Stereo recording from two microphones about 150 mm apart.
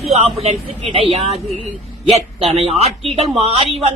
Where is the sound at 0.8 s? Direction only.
40° right (ahead or behind).